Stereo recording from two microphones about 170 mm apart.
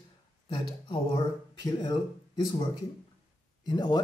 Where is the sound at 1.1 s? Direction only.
25° left (ahead or behind).